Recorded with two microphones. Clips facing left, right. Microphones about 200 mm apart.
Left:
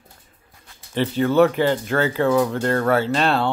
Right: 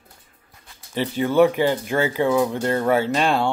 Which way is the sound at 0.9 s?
10° right (ahead or behind).